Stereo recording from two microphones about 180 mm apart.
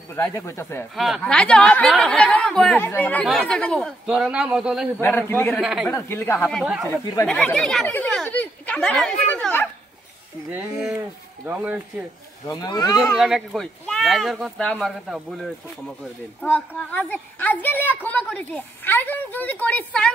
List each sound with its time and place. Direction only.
0.1 s a woman's voice: 15° left (ahead or behind)
0.9 s a woman's voice: centre (ahead or behind)
5.0 s a woman's voice: 10° left (ahead or behind)
5.6 s speech: 5° right (ahead or behind)
5.9 s a woman's voice: 15° left (ahead or behind)
11.4 s speech: 10° right (ahead or behind)
12.4 s speech: 20° left (ahead or behind)
13.0 s a woman's voice: centre (ahead or behind)